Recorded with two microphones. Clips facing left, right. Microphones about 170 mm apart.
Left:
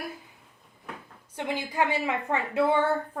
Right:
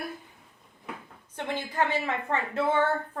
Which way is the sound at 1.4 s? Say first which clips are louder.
Left 1 dB; 10° left (ahead or behind).